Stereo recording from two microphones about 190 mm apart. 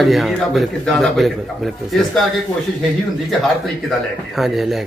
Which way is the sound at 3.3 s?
Centre (ahead or behind).